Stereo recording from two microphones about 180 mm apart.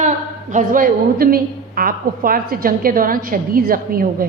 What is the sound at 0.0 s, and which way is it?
A woman's voice, 40° right (ahead or behind).